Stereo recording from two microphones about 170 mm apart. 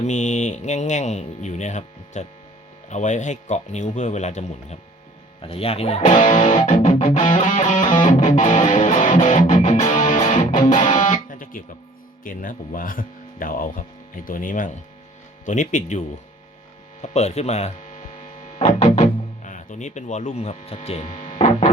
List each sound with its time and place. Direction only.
0.0 s music: 45° left (ahead or behind)
5.4 s speech: 35° left (ahead or behind)
6.7 s music: 45° left (ahead or behind)
17.0 s hum: 40° left (ahead or behind)